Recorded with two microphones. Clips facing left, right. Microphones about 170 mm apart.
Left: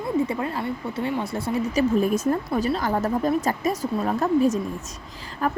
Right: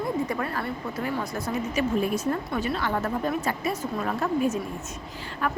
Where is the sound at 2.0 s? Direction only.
45° left (ahead or behind).